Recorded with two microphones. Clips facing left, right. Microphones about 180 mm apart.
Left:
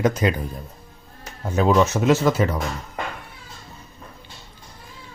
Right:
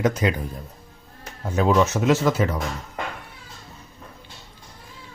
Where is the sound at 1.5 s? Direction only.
30° left (ahead or behind).